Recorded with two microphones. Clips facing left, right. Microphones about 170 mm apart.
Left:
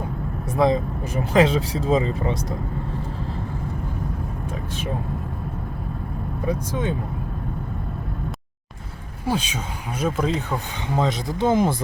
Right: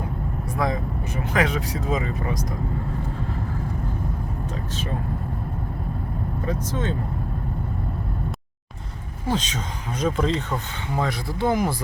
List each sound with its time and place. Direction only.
0.5 s speech: 25° left (ahead or behind)
4.7 s speech: 15° left (ahead or behind)
6.4 s speech: 15° left (ahead or behind)
9.2 s speech: 10° left (ahead or behind)
10.9 s speech: 20° left (ahead or behind)